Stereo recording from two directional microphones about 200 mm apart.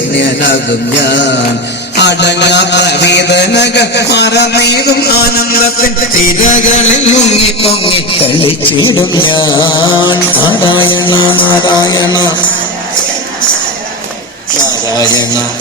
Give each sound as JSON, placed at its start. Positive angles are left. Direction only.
{"t": 1.0, "sound": "a sound", "side_deg": 60}
{"t": 6.5, "sound": "music", "side_deg": 35}
{"t": 14.9, "sound": "a man's voice", "side_deg": 20}